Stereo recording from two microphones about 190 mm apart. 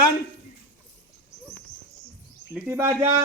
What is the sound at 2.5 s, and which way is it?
Speech, 10° right (ahead or behind).